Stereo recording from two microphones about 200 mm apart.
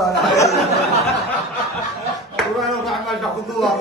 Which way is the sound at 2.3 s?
Centre (ahead or behind).